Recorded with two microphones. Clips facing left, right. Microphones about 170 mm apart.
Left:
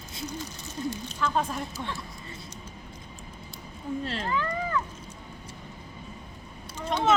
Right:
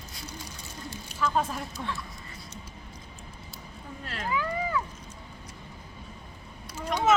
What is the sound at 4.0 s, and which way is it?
Speech, 30° left (ahead or behind).